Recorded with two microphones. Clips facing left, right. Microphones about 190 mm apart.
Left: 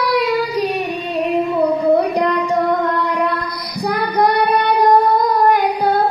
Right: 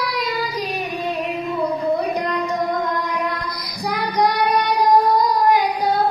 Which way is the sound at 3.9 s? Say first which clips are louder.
Left 3 dB; 60° left (ahead or behind).